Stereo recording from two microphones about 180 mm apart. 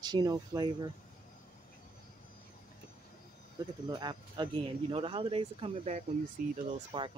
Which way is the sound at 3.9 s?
25° right (ahead or behind).